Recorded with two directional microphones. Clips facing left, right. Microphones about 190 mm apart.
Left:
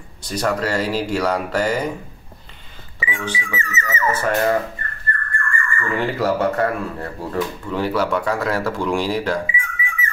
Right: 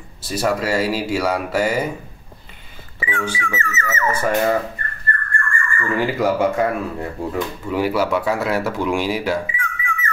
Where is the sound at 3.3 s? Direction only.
15° left (ahead or behind).